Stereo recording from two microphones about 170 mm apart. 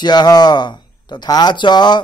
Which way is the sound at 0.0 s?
25° left (ahead or behind).